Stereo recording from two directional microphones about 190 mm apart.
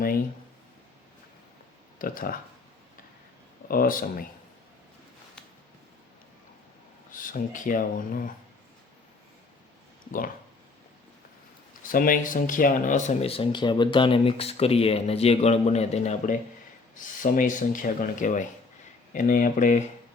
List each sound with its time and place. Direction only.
2.0 s speech: 50° left (ahead or behind)
3.7 s speech: 50° left (ahead or behind)
7.1 s speech: 45° left (ahead or behind)
11.9 s speech: 45° left (ahead or behind)